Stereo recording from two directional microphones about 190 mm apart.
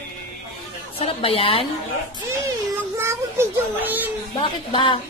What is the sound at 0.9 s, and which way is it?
Speech, 30° left (ahead or behind).